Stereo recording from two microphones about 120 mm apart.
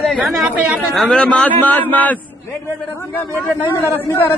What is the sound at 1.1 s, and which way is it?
A man's voice, 10° left (ahead or behind).